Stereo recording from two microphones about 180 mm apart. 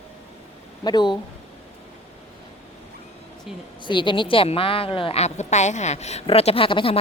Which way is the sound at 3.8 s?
25° left (ahead or behind).